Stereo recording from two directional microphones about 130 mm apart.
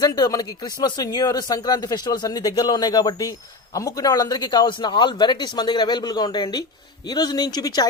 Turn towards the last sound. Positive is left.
turn(degrees=30)  # may be behind; listen again after turning